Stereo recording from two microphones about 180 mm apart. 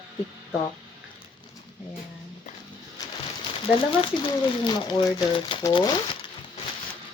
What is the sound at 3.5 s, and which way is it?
Speech, 30° left (ahead or behind).